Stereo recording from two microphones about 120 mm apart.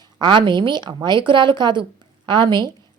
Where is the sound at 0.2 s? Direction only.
40° right (ahead or behind).